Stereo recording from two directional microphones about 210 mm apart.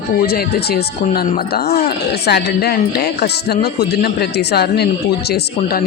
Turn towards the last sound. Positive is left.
turn(degrees=50)  # may be behind; listen again after turning